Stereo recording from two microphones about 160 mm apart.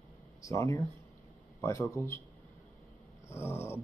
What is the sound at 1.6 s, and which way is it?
Mantra, 15° left (ahead or behind).